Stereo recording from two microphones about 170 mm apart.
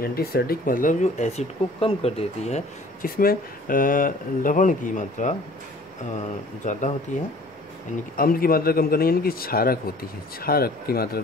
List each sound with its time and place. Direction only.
0.0 s speech: 65° left (ahead or behind); by 3.1 s 40° left (ahead or behind)
3.2 s speech: 60° left (ahead or behind)
8.2 s a man's voice: 60° left (ahead or behind)